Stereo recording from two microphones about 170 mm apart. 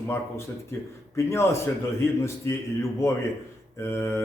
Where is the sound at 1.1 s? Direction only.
15° left (ahead or behind).